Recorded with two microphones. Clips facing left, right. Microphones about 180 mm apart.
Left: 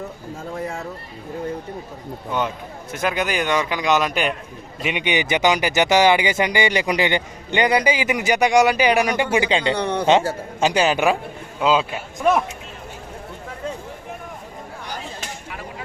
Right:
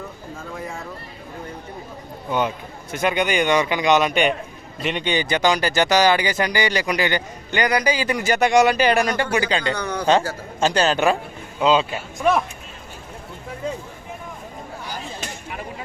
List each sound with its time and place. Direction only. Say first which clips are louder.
2.9 s a man's voice: right 2 dB; centre (ahead or behind)